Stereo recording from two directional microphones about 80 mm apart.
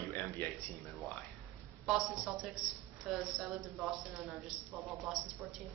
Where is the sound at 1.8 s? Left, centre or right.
Centre.